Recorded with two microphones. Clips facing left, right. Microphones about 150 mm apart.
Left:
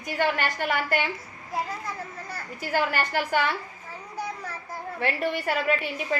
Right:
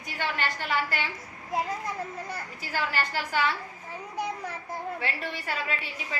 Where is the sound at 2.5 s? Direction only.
50° left (ahead or behind).